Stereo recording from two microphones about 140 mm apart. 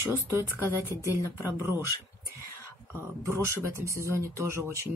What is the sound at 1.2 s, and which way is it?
Speech, 25° left (ahead or behind).